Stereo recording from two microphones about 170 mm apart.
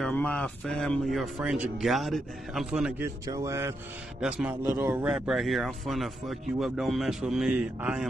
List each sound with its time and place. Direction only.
0.0 s speech: 10° left (ahead or behind)
3.3 s speech: 20° right (ahead or behind)
4.2 s a man's voice: 5° right (ahead or behind)